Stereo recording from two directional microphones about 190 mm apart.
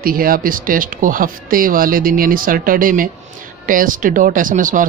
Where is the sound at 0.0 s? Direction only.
50° right (ahead or behind).